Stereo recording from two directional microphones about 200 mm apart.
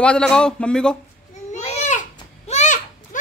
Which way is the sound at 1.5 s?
35° left (ahead or behind).